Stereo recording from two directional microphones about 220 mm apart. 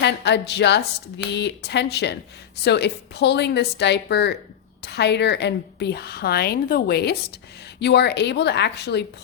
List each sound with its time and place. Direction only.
0.0 s a woman's voice: 50° left (ahead or behind)